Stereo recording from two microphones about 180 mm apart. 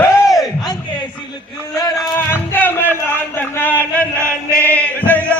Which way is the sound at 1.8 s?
20° left (ahead or behind).